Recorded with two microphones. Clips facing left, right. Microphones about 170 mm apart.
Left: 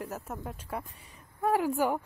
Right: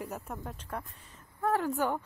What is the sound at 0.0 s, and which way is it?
A woman's voice, centre (ahead or behind).